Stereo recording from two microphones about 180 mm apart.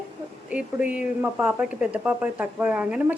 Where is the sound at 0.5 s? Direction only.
5° right (ahead or behind).